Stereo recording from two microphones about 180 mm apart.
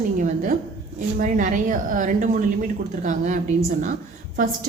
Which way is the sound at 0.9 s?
45° right (ahead or behind).